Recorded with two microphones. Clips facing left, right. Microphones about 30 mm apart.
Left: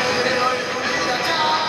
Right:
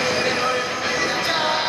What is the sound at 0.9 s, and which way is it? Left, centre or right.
Music, centre.